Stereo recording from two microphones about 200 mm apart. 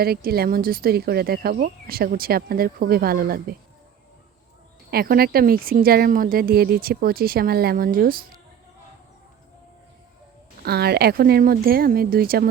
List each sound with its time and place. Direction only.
0.0 s speech: 50° right (ahead or behind)
4.9 s speech: 50° right (ahead or behind)
10.6 s speech: 50° right (ahead or behind)